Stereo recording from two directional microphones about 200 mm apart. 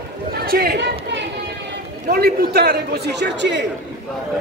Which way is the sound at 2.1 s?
50° right (ahead or behind).